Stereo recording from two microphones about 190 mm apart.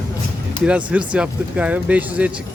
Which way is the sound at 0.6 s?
5° right (ahead or behind).